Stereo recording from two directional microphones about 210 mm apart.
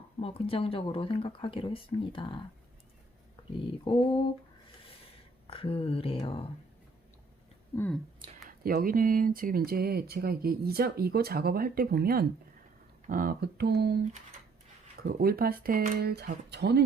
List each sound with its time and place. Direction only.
0.2 s speech: 25° left (ahead or behind)
3.7 s speech: 25° left (ahead or behind)
5.5 s speech: 25° left (ahead or behind)
8.4 s speech: 45° right (ahead or behind)
15.0 s speech: 45° right (ahead or behind)